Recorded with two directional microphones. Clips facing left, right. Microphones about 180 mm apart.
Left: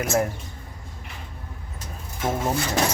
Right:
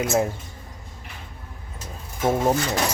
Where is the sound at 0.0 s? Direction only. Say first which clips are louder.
Right 1 dB; 20° right (ahead or behind).